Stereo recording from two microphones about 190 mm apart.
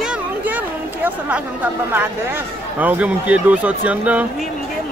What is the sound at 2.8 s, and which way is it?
Speech, 10° right (ahead or behind).